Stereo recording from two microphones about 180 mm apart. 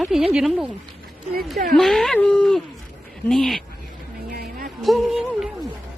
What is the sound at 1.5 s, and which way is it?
Speech, 55° right (ahead or behind).